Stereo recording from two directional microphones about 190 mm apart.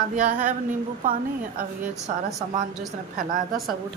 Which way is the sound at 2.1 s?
40° right (ahead or behind).